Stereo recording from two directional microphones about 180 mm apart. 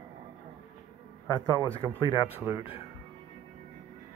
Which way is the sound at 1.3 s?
20° left (ahead or behind).